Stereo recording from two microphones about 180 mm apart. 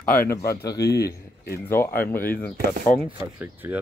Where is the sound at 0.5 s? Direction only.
15° left (ahead or behind).